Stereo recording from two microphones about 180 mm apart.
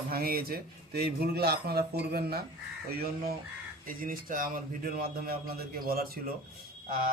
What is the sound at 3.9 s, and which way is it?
A man's voice, 50° right (ahead or behind).